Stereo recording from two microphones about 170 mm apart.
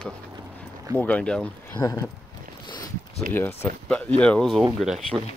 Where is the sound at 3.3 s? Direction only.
10° left (ahead or behind).